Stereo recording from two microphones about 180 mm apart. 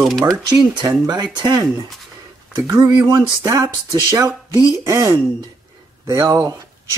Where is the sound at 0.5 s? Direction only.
20° right (ahead or behind).